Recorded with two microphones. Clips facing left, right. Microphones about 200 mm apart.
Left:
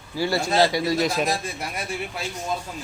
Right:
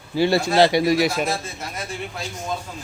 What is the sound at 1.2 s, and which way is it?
Speech, 15° left (ahead or behind).